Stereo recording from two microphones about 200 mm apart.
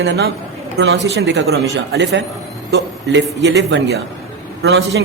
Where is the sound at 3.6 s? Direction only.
60° right (ahead or behind).